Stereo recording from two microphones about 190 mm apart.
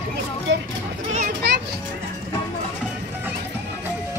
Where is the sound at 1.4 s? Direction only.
60° right (ahead or behind).